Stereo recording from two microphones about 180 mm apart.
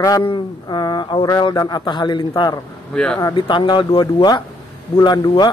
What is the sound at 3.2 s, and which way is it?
A man's voice, 25° left (ahead or behind).